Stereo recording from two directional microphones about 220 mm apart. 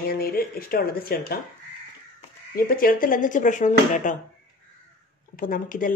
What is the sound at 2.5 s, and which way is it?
Speech, 40° left (ahead or behind).